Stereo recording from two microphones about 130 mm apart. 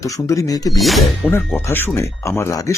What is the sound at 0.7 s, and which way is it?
Speech, centre (ahead or behind).